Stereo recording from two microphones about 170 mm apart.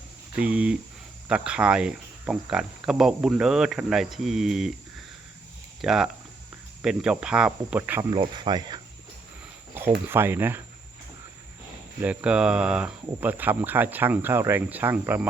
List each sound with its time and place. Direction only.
0.3 s speech: 5° right (ahead or behind)
5.8 s speech: 5° right (ahead or behind)
8.1 s speech: 25° right (ahead or behind)
10.1 s speech: 15° right (ahead or behind)
12.0 s speech: 5° right (ahead or behind)